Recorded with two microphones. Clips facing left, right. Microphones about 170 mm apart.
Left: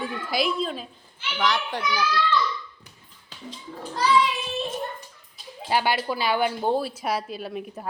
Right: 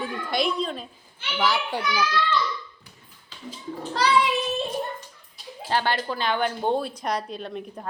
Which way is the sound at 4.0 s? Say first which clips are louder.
Right 1 dB; 80° right.